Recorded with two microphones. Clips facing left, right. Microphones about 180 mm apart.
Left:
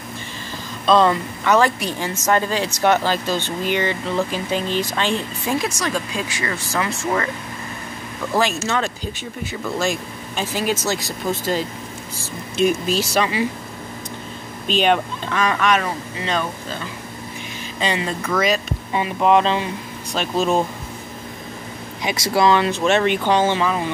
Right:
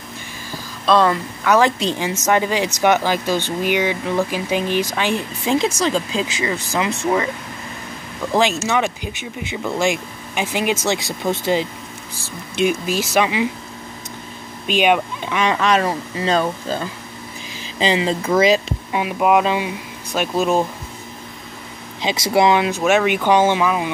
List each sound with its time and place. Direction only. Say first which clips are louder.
0.8 s speech: even; centre (ahead or behind)
1.6 s speech: right 2 dB; 20° right (ahead or behind)
8.3 s speech: right 3 dB; 20° right (ahead or behind)
12.6 s speech: left 1 dB; 10° right (ahead or behind)
14.7 s speech: right 1 dB; 10° right (ahead or behind); by 16.8 s 35° right (ahead or behind)
17.7 s speech: right 5 dB; 25° right (ahead or behind)
18.9 s speech: even; 10° right (ahead or behind)
22.0 s speech: right 2 dB; 25° right (ahead or behind)